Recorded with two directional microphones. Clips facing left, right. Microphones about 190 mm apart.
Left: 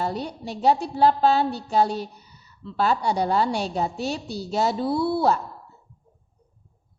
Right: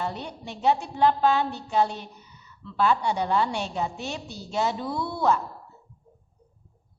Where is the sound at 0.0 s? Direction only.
40° left (ahead or behind).